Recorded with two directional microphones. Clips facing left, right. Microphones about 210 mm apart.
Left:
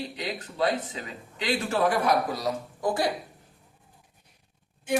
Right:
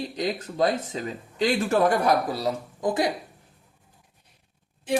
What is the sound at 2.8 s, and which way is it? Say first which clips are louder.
Speech: right 2 dB; 20° right (ahead or behind).